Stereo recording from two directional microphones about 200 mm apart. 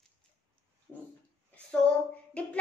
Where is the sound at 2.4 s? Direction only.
5° left (ahead or behind).